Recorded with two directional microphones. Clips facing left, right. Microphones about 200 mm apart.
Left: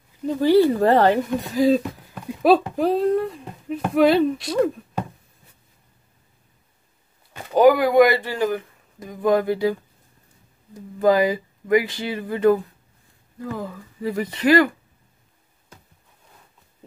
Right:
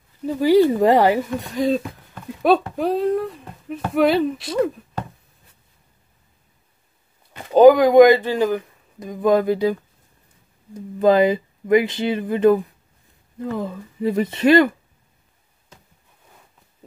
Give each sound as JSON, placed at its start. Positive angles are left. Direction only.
{"t": 0.2, "sound": "speech", "side_deg": -10}
{"t": 1.3, "sound": "speech", "side_deg": 0}
{"t": 7.5, "sound": "speech", "side_deg": -20}
{"t": 11.0, "sound": "speech", "side_deg": -20}